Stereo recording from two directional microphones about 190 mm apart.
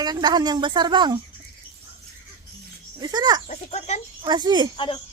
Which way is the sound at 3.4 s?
35° left (ahead or behind).